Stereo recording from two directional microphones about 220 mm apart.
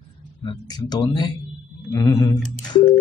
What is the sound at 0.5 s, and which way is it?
Speech, 20° left (ahead or behind).